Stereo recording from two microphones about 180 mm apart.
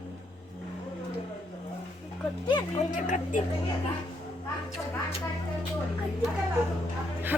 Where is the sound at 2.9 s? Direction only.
45° left (ahead or behind).